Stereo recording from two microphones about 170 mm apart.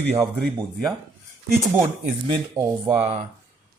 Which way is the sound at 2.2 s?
25° right (ahead or behind).